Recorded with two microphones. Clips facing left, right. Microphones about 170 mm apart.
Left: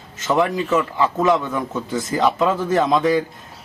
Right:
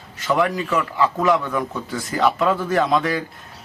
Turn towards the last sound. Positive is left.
turn(degrees=20)  # may be behind; listen again after turning